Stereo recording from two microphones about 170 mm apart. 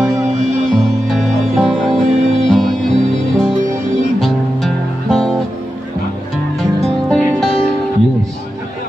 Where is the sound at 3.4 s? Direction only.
45° right (ahead or behind).